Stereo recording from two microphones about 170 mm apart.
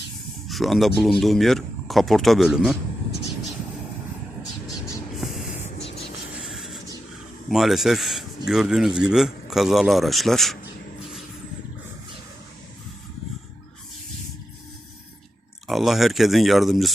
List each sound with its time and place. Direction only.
0.4 s a man's voice: centre (ahead or behind)
5.1 s a sound: centre (ahead or behind)
5.8 s music: 35° left (ahead or behind)
6.4 s a sound: centre (ahead or behind)
7.5 s a man's voice: centre (ahead or behind)
15.6 s a man's voice: centre (ahead or behind)